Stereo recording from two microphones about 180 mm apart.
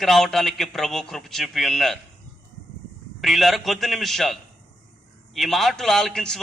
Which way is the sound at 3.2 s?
Centre (ahead or behind).